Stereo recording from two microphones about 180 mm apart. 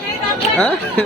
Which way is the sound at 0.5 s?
10° left (ahead or behind).